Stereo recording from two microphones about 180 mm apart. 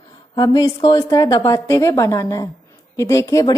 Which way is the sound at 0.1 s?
25° left (ahead or behind).